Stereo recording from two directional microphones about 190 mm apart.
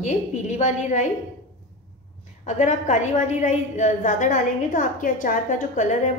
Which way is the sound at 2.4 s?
40° left (ahead or behind).